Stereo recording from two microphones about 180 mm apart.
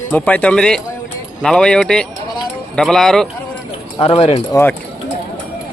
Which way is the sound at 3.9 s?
35° left (ahead or behind).